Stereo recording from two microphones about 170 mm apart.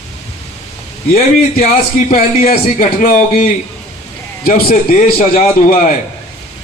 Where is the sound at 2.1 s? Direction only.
60° left (ahead or behind).